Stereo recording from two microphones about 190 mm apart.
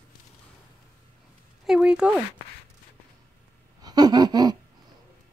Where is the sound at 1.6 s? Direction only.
5° right (ahead or behind).